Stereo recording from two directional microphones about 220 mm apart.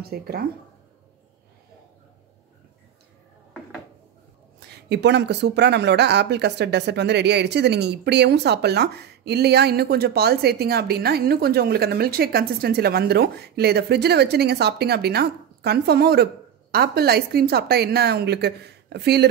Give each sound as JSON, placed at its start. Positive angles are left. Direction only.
{"t": 0.0, "sound": "speech", "side_deg": -45}
{"t": 4.6, "sound": "speech", "side_deg": -50}